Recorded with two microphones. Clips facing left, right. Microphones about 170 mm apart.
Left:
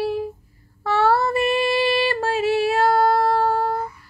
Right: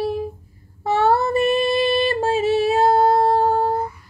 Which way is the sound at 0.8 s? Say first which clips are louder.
Right 1 dB; 20° right (ahead or behind).